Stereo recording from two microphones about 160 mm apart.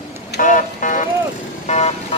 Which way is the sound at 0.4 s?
55° left (ahead or behind).